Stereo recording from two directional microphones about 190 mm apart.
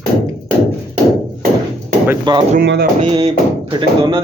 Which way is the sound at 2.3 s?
25° right (ahead or behind).